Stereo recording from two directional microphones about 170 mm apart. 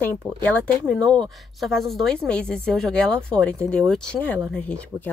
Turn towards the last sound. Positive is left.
turn(degrees=5)  # may be behind; listen again after turning